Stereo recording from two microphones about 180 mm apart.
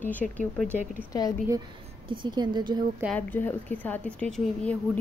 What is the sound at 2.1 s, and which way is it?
Speech, 25° right (ahead or behind).